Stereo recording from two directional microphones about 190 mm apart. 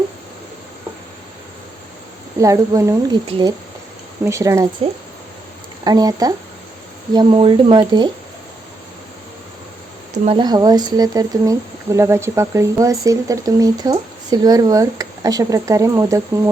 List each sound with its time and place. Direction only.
2.4 s speech: 15° right (ahead or behind)
5.8 s speech: 20° right (ahead or behind)
10.2 s speech: 20° right (ahead or behind)